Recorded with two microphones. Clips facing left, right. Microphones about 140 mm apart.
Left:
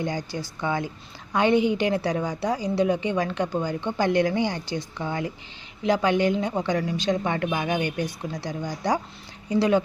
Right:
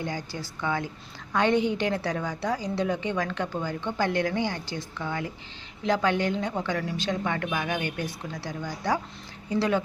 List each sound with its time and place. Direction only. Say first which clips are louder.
0.0 s a woman's voice: left 4 dB; 15° left (ahead or behind)